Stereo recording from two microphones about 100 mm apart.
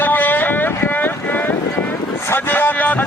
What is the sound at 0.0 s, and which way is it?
Boat, 20° left (ahead or behind).